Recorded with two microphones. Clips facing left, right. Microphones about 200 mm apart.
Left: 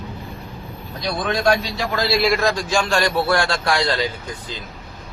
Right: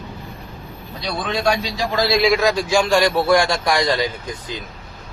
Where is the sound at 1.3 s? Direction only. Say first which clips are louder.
Left 1 dB; 15° right (ahead or behind).